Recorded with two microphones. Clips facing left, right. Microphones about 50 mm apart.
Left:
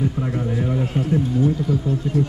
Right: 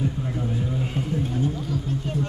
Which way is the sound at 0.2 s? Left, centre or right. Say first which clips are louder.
Left 5 dB; left.